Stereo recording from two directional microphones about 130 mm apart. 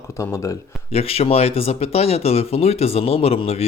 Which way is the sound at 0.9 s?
50° left (ahead or behind).